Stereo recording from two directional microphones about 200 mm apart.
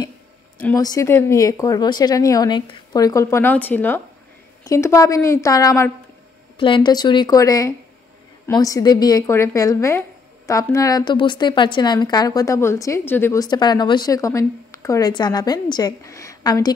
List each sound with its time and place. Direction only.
0.7 s a woman's voice: 15° left (ahead or behind)